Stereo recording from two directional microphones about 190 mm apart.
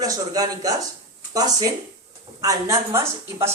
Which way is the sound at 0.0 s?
20° right (ahead or behind).